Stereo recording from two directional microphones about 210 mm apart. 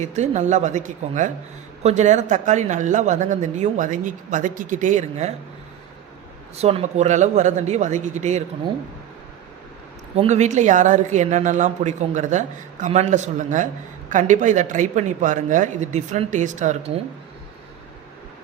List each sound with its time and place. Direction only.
0.0 s speech: 35° right (ahead or behind)
6.6 s speech: 30° right (ahead or behind)
10.2 s speech: 35° right (ahead or behind)